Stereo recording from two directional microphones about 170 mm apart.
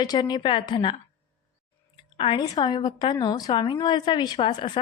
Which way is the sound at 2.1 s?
30° left (ahead or behind).